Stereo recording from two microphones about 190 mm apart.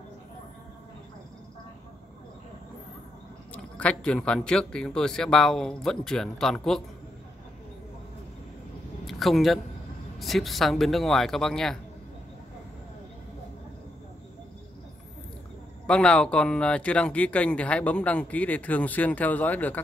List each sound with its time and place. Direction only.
3.5 s speech: 5° left (ahead or behind)
9.0 s a sound: centre (ahead or behind)
10.1 s speech: centre (ahead or behind)
15.9 s speech: 5° left (ahead or behind)